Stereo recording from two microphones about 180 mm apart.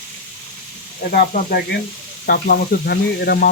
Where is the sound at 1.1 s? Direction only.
45° left (ahead or behind).